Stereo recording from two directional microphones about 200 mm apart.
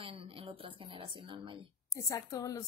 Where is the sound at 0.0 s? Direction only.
25° right (ahead or behind).